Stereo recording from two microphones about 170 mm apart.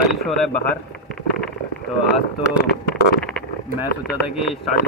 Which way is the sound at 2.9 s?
5° left (ahead or behind).